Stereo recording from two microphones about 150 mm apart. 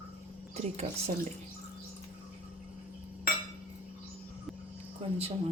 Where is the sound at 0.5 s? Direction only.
45° right (ahead or behind).